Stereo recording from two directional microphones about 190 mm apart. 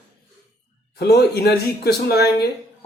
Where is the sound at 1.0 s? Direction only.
60° left (ahead or behind).